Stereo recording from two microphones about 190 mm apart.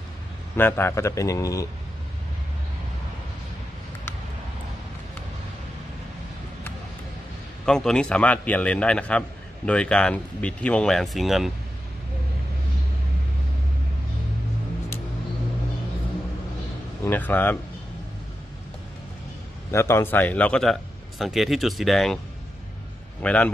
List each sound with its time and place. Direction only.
0.6 s a man's voice: 10° left (ahead or behind)
7.6 s speech: 5° left (ahead or behind)
17.0 s a man's voice: 10° left (ahead or behind)
19.7 s speech: 15° left (ahead or behind)
23.2 s a man's voice: 5° left (ahead or behind)